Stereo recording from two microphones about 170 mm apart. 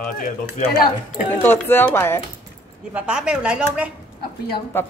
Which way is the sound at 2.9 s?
5° right (ahead or behind).